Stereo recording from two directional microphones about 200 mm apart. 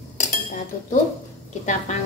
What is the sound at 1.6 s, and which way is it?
Speech, 35° left (ahead or behind).